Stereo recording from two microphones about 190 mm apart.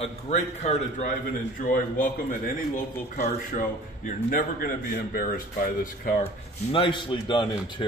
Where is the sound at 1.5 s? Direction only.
45° left (ahead or behind).